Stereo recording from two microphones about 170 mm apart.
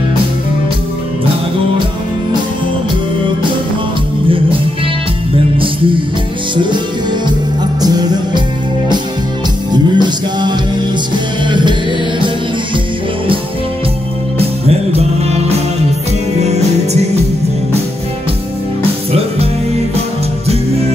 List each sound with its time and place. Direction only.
6.5 s music: 25° right (ahead or behind)
9.7 s music: 25° right (ahead or behind)
14.9 s music: 40° right (ahead or behind)